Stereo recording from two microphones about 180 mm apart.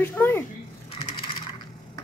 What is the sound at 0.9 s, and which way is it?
Mechanisms, 35° left (ahead or behind).